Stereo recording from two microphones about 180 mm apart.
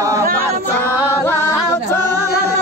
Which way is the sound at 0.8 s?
10° left (ahead or behind).